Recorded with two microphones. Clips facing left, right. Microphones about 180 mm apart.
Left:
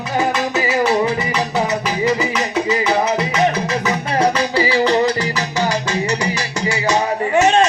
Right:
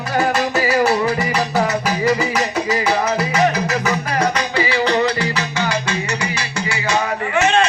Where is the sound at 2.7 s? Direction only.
25° left (ahead or behind).